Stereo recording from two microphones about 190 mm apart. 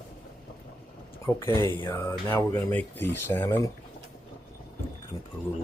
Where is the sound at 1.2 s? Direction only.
10° left (ahead or behind).